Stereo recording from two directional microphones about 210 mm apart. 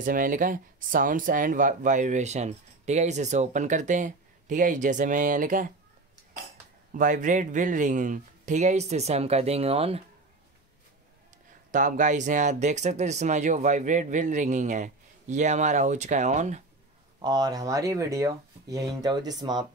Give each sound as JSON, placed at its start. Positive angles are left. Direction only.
{"t": 0.0, "sound": "speech", "side_deg": -40}
{"t": 6.9, "sound": "speech", "side_deg": -40}
{"t": 11.7, "sound": "speech", "side_deg": -35}
{"t": 17.2, "sound": "speech", "side_deg": -20}